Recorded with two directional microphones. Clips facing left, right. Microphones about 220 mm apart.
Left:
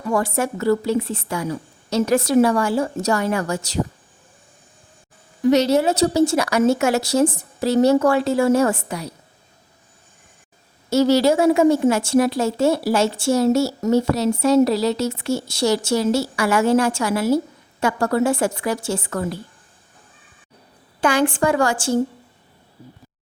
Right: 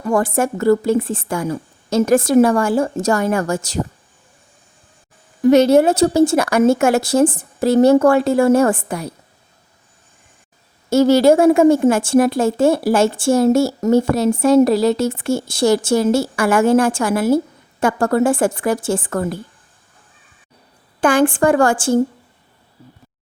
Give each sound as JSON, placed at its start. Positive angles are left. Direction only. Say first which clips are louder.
{"t": 0.1, "sound": "a woman's voice", "louder": "right 4 dB", "side_deg": -50}
{"t": 5.4, "sound": "a woman's voice", "louder": "right 5 dB", "side_deg": -50}
{"t": 10.8, "sound": "a woman's voice", "louder": "right 4 dB", "side_deg": -50}
{"t": 21.0, "sound": "a woman's voice", "louder": "right 4 dB", "side_deg": -50}